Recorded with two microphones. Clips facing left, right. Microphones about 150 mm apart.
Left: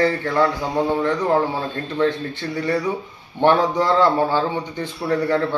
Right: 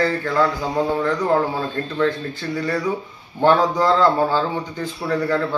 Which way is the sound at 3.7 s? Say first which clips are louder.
Even; 20° left (ahead or behind).